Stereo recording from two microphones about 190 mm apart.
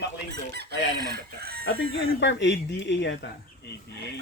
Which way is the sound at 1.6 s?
85° left.